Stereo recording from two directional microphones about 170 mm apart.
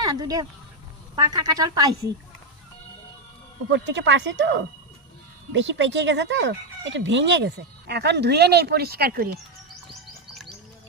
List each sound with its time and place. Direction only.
0.0 s a woman's voice: 20° right (ahead or behind)
3.7 s speech: 90° right; by 9.4 s 65° right (ahead or behind)